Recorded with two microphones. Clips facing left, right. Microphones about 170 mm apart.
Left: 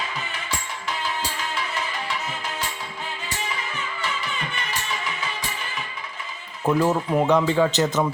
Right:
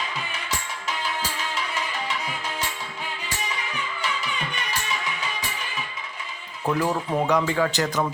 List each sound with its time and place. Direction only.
6.7 s speech: 10° left (ahead or behind)